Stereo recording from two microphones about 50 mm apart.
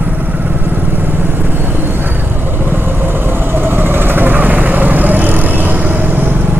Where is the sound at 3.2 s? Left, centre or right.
Right.